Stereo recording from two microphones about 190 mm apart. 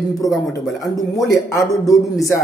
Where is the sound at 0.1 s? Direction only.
20° left (ahead or behind).